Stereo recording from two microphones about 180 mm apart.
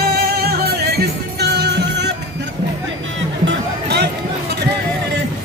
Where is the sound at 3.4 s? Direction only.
65° right (ahead or behind).